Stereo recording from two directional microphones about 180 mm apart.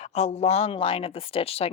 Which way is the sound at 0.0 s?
35° left (ahead or behind).